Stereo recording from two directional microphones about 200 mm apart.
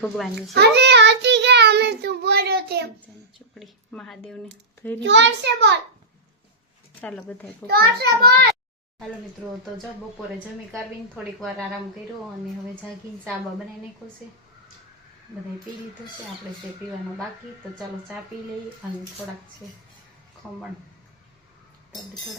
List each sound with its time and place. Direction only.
0.0 s a woman's voice: centre (ahead or behind)
0.5 s child singing: 55° right (ahead or behind)
3.6 s a woman's voice: centre (ahead or behind)
4.9 s a child's voice: 65° right (ahead or behind)
7.0 s speech: 5° left (ahead or behind)
7.7 s a child's voice: 50° right (ahead or behind)
10.7 s a woman's voice: centre (ahead or behind)